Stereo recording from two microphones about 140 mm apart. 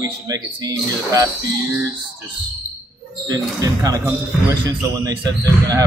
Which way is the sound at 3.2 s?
25° right (ahead or behind).